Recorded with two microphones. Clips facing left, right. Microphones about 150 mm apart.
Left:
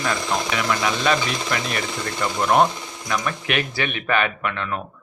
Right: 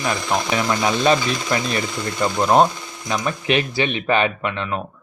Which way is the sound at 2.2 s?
25° right (ahead or behind).